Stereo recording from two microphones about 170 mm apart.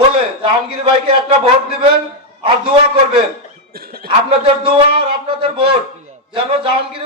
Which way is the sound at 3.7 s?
60° right (ahead or behind).